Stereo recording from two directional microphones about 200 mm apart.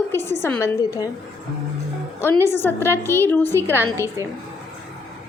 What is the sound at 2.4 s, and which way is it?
A woman's voice, 10° left (ahead or behind).